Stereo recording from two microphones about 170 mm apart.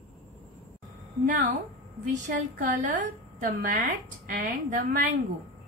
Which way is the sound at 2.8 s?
50° right (ahead or behind).